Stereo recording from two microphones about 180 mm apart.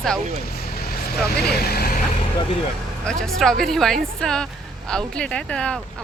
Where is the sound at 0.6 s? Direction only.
60° left (ahead or behind).